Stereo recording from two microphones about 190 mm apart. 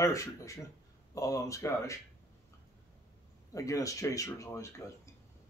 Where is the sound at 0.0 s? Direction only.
15° left (ahead or behind).